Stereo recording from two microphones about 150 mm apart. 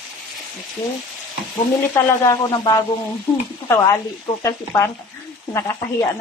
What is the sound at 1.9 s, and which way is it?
Speech, 20° left (ahead or behind).